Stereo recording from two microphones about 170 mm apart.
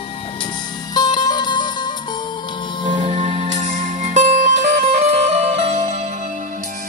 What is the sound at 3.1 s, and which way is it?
Music, 45° right (ahead or behind).